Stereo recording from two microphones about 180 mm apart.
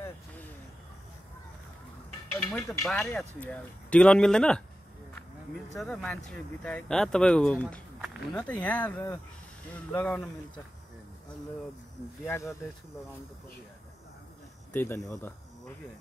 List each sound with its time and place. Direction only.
2.5 s speech: 5° left (ahead or behind)
5.8 s speech: 5° left (ahead or behind)
12.3 s speech: 15° left (ahead or behind)
14.7 s speech: 10° left (ahead or behind)